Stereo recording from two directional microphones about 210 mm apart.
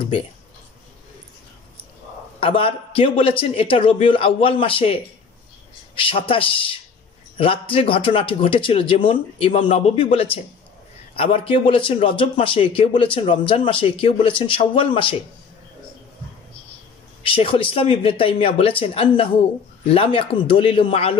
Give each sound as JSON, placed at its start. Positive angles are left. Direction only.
{"t": 2.4, "sound": "speech", "side_deg": 25}
{"t": 17.2, "sound": "speech", "side_deg": 25}